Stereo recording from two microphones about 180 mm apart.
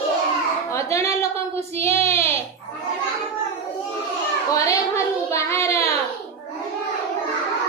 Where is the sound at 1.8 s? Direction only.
15° left (ahead or behind).